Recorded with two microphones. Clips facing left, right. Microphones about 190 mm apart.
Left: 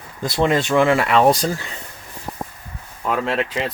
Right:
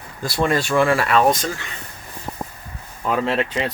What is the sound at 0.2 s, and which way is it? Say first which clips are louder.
Speech: left 2 dB; 20° left (ahead or behind).